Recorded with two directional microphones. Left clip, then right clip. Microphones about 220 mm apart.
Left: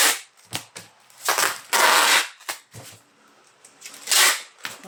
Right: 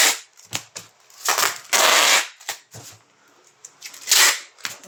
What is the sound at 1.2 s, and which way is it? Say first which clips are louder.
Crushing: right 1 dB; 15° right (ahead or behind).